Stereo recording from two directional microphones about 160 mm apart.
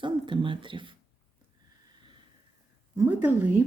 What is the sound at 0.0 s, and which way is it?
Speech, 30° right (ahead or behind).